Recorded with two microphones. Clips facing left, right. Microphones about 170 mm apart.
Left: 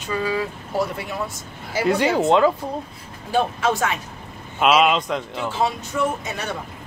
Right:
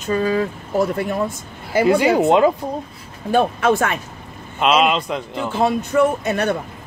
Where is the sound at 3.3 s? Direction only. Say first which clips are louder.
Right 5 dB; 55° right (ahead or behind).